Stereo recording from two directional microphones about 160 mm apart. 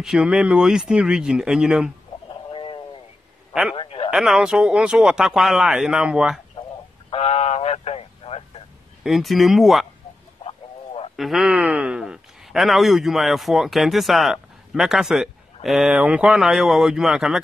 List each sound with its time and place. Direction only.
0.0 s a man's voice: 5° right (ahead or behind)
2.5 s sheep: 30° left (ahead or behind)
3.7 s a sound: 35° left (ahead or behind)
4.1 s a man's voice: 5° right (ahead or behind)
7.1 s a sound: 40° left (ahead or behind)
9.0 s a man's voice: centre (ahead or behind)
11.1 s a man's voice: centre (ahead or behind)